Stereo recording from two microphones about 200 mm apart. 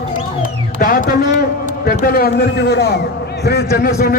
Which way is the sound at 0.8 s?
45° left (ahead or behind).